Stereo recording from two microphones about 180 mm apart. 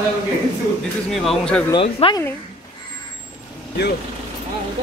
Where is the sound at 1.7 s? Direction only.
25° left (ahead or behind).